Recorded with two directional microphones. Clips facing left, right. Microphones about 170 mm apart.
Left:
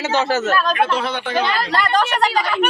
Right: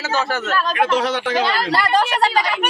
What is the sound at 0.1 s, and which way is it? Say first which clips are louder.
Speech: left 3 dB; 25° left (ahead or behind).